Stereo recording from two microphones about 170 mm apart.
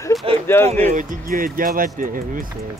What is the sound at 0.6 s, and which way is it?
Speech, 45° right (ahead or behind).